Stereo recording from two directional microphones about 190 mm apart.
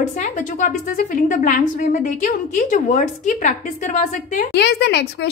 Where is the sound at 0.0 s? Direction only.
40° left (ahead or behind).